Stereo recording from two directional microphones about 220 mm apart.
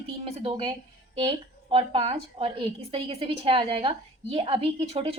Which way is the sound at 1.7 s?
25° right (ahead or behind).